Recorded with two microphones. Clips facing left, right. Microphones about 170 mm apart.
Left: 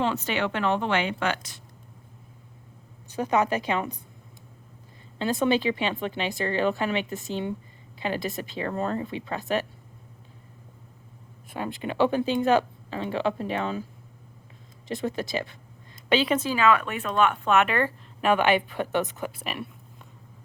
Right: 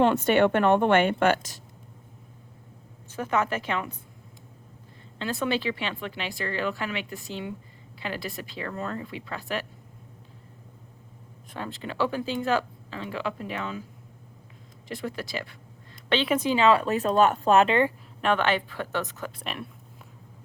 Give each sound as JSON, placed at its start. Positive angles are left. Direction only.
{"t": 0.0, "sound": "a woman's voice", "side_deg": -50}
{"t": 3.1, "sound": "speech", "side_deg": 15}
{"t": 5.3, "sound": "speech", "side_deg": 20}
{"t": 11.5, "sound": "speech", "side_deg": 15}
{"t": 14.8, "sound": "speech", "side_deg": 20}
{"t": 16.0, "sound": "speech", "side_deg": 5}
{"t": 16.3, "sound": "speech", "side_deg": -20}
{"t": 18.2, "sound": "speech", "side_deg": 10}
{"t": 19.4, "sound": "speech", "side_deg": 5}